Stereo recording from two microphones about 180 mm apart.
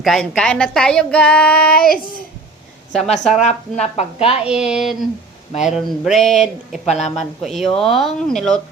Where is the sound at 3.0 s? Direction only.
35° left (ahead or behind).